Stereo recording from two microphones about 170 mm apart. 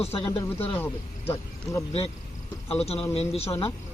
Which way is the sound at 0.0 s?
35° left (ahead or behind).